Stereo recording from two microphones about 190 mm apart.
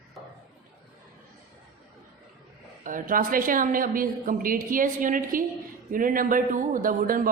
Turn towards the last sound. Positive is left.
turn(degrees=-45)  # may be behind; listen again after turning